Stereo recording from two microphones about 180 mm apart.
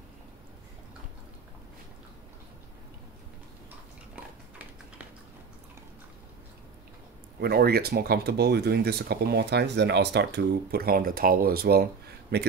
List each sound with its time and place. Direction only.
4.1 s typing: 10° right (ahead or behind)
7.3 s speech: 60° right (ahead or behind)